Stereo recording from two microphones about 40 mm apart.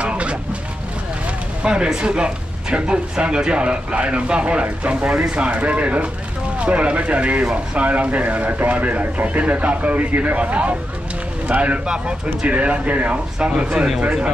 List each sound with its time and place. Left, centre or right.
0.0 s vehicle: right
1.6 s speech: right
8.5 s speech: right
8.7 s speech: right